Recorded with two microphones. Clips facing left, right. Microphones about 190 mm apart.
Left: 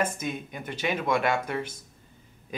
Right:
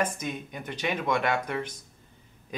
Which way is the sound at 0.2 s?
5° left (ahead or behind).